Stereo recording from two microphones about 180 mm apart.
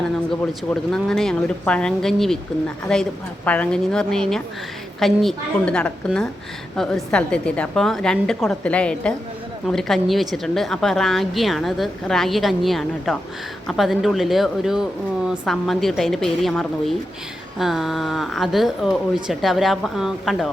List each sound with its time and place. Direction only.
0.7 s a woman's voice: 5° left (ahead or behind)